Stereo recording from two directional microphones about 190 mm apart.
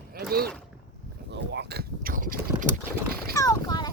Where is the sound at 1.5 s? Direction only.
60° right (ahead or behind).